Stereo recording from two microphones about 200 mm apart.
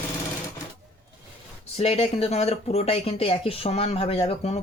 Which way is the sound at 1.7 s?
30° left (ahead or behind).